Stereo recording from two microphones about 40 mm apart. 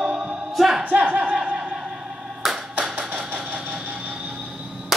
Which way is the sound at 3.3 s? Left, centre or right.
Right.